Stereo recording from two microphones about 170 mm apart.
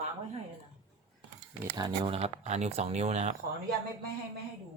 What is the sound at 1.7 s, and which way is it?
Speech, 25° right (ahead or behind).